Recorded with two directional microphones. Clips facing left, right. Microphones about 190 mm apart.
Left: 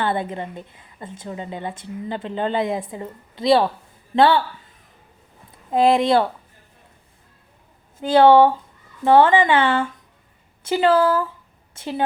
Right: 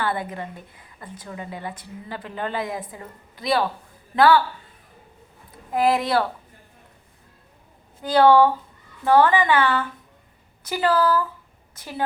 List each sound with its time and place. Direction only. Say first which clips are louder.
0.0 s a woman's voice: left 3 dB; 25° left (ahead or behind)
5.7 s a woman's voice: left 4 dB; 25° left (ahead or behind)
8.0 s a woman's voice: left 3 dB; 25° left (ahead or behind)